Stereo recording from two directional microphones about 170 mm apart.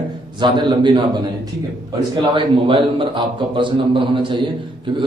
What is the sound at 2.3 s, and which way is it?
A man's voice, 30° right (ahead or behind).